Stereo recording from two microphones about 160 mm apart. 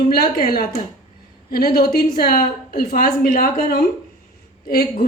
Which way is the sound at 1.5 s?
75° left (ahead or behind).